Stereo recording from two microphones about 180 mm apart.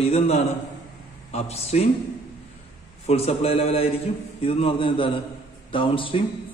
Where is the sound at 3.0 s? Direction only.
35° left (ahead or behind).